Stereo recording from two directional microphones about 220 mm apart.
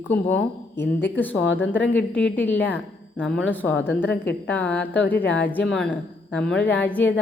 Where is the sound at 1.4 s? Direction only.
60° left (ahead or behind).